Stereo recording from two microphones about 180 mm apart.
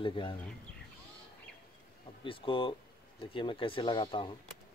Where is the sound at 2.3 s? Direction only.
30° left (ahead or behind).